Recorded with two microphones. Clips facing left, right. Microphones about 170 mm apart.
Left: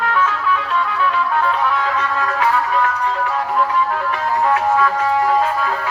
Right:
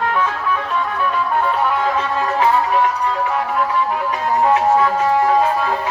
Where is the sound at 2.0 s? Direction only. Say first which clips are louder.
Right 2 dB; 20° right (ahead or behind).